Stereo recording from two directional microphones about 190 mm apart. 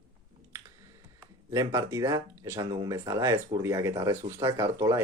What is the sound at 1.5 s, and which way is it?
Speech, 15° right (ahead or behind).